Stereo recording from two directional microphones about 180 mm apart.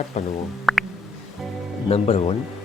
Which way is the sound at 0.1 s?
40° left (ahead or behind).